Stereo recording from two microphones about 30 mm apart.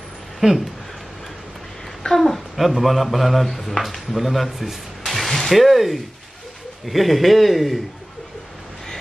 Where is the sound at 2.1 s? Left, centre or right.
Centre.